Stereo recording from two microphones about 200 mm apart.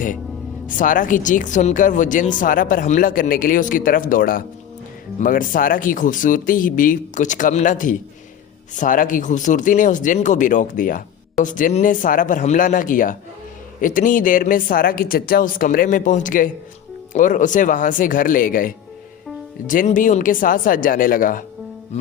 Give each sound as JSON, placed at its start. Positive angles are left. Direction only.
{"t": 0.8, "sound": "speech", "side_deg": 40}